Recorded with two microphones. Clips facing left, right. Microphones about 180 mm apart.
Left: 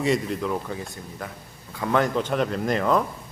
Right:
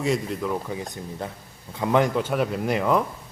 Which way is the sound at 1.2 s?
30° right (ahead or behind).